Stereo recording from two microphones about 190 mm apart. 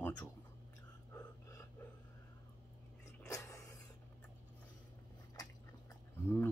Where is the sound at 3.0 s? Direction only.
15° left (ahead or behind).